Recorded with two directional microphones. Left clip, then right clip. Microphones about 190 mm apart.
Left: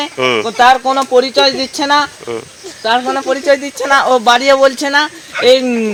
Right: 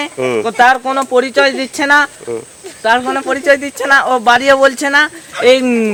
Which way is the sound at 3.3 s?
25° right (ahead or behind).